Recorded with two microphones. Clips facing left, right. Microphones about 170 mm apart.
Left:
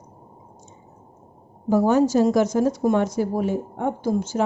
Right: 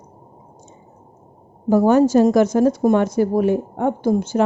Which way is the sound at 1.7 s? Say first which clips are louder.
Right 4 dB; 55° right (ahead or behind).